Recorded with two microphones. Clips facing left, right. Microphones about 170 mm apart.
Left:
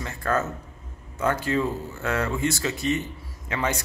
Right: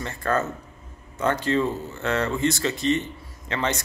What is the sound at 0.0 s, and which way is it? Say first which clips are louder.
Speech: right 1 dB; 5° left (ahead or behind).